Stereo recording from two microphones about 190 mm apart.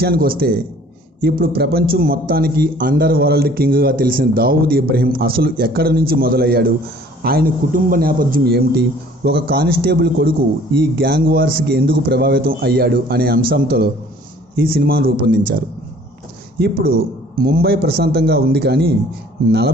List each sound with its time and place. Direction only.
0.0 s a man's voice: 50° right (ahead or behind)